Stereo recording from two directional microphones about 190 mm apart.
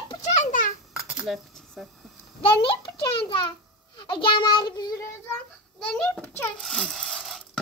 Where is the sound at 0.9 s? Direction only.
5° right (ahead or behind).